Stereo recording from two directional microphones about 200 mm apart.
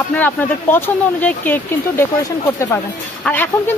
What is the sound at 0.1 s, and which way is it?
Speech, 10° left (ahead or behind).